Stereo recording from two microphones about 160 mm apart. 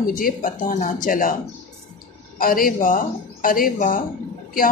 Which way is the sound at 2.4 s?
65° left (ahead or behind).